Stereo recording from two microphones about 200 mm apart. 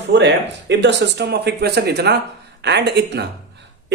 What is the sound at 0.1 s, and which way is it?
A man's voice, 60° right (ahead or behind).